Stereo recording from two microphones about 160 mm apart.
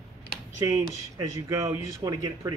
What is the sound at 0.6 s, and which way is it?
Speech, 20° right (ahead or behind).